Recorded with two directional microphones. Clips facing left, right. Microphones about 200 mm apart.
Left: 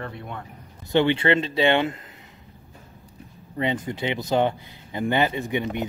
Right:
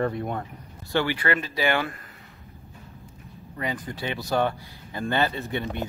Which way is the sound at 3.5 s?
25° left (ahead or behind).